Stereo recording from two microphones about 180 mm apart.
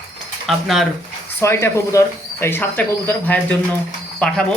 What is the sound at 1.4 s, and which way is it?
Speech, 15° left (ahead or behind).